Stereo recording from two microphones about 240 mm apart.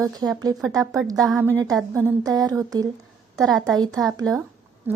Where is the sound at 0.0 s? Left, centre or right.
Centre.